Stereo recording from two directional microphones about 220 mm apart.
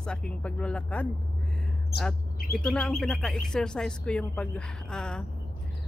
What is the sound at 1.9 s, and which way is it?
Speech, 45° left (ahead or behind).